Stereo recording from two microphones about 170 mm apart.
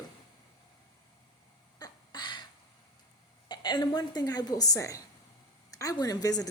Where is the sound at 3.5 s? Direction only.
25° left (ahead or behind).